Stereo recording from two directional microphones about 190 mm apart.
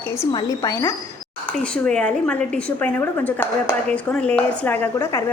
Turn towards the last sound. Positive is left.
turn(degrees=15)  # may be behind; listen again after turning